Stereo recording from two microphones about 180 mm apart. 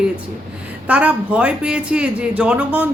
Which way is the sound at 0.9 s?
5° right (ahead or behind).